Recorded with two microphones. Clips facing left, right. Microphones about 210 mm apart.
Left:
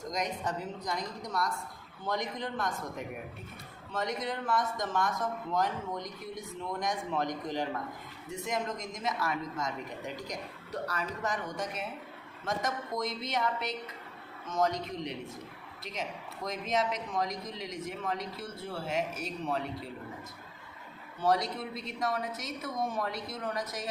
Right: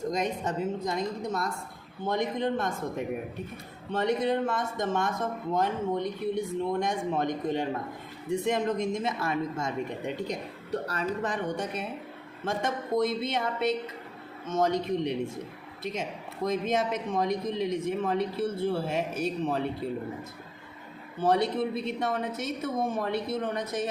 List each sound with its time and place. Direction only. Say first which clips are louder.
0.0 s speech: right 5 dB; 30° right (ahead or behind)
3.9 s speech: right 8 dB; 30° right (ahead or behind)
21.2 s speech: right 5 dB; 30° right (ahead or behind)